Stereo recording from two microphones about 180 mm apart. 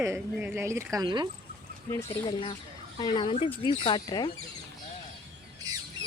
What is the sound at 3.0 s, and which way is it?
Speech, 25° left (ahead or behind).